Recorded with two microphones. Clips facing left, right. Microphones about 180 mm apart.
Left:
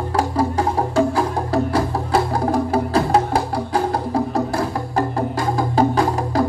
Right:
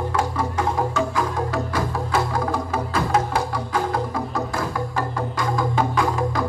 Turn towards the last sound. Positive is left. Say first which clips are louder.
# left 4 dB
turn(degrees=35)  # may be behind; listen again after turning